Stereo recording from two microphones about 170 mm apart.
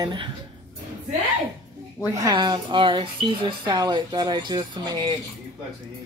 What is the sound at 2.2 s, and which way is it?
A woman's voice, 25° right (ahead or behind).